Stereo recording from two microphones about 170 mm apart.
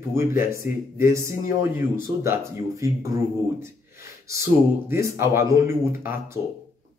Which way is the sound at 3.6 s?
15° right (ahead or behind).